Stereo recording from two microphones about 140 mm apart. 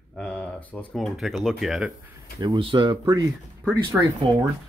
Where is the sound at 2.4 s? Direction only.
35° right (ahead or behind).